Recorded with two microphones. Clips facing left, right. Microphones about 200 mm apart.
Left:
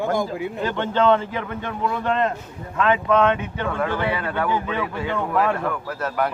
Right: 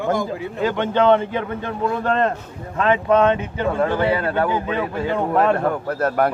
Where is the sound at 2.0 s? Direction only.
40° right (ahead or behind).